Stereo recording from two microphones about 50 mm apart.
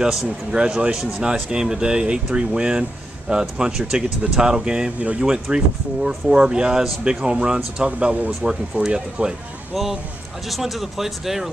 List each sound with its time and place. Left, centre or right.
0.0 s speech: centre
10.5 s speech: centre